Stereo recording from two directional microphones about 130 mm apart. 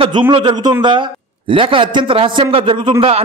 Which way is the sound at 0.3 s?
35° right (ahead or behind).